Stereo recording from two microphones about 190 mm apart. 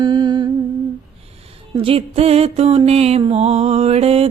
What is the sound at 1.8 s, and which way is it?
Music, 30° right (ahead or behind).